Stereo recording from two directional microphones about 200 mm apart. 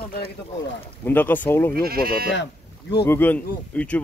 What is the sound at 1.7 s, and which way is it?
Speech, 50° right (ahead or behind).